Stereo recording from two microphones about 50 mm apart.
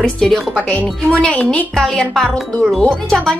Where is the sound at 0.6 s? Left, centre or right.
Left.